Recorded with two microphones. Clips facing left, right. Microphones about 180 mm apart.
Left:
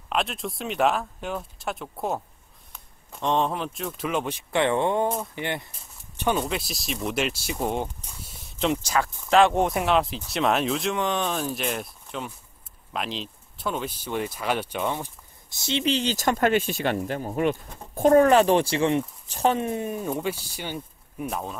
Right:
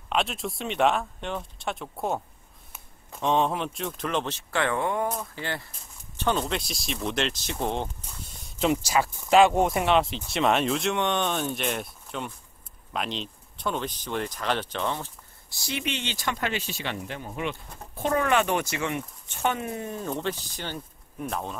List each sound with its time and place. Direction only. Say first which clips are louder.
0.1 s speech: even; centre (ahead or behind)
6.4 s speech: left 1 dB; centre (ahead or behind)